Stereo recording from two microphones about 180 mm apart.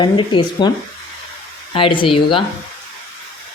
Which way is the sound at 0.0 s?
25° left (ahead or behind).